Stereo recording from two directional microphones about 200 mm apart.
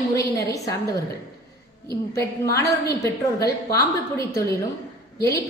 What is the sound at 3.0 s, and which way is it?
A woman's voice, 15° left (ahead or behind).